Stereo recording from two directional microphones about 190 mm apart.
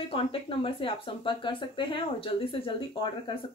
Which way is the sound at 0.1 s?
30° left (ahead or behind).